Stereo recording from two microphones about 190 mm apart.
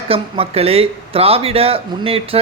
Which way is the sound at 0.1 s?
30° right (ahead or behind).